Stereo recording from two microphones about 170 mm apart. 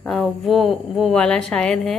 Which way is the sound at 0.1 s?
Centre (ahead or behind).